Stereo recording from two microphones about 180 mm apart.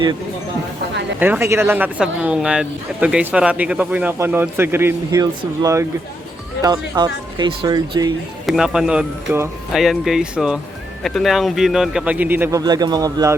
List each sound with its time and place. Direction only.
1.2 s speech: 10° right (ahead or behind)
8.4 s speech: 5° right (ahead or behind); by 13.3 s 20° right (ahead or behind)